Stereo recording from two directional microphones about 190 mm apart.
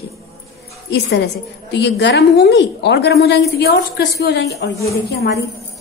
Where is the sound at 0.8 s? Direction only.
65° left (ahead or behind).